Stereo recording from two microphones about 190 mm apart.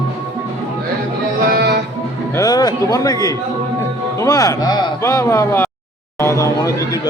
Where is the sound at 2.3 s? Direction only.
20° left (ahead or behind).